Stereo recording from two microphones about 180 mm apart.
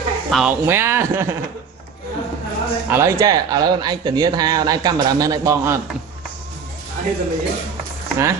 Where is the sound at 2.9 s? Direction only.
15° right (ahead or behind).